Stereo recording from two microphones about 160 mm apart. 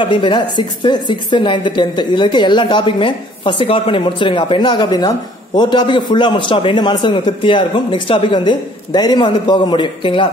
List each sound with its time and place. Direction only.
0.0 s a woman's voice: 30° left (ahead or behind)